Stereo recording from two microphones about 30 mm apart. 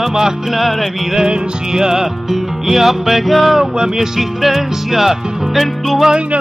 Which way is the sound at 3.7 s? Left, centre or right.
Centre.